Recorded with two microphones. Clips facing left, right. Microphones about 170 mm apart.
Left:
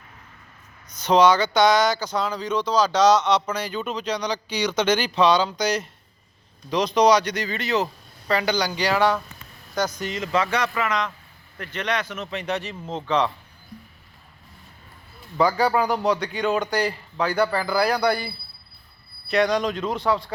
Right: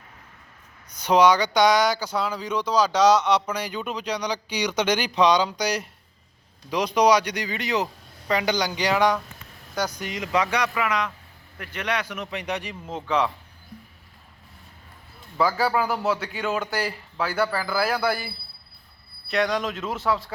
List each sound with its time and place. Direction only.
0.9 s speech: 10° right (ahead or behind)
15.4 s a man's voice: centre (ahead or behind)